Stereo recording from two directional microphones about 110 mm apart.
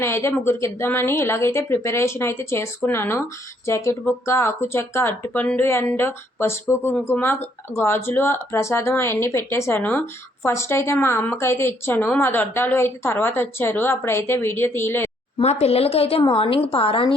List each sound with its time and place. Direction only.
0.0 s a woman's voice: 25° left (ahead or behind)
15.4 s a woman's voice: 70° left (ahead or behind); by 17.2 s 55° left (ahead or behind)